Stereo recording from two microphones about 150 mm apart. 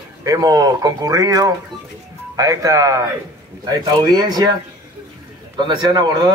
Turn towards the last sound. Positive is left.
turn(degrees=-25)  # may be behind; listen again after turning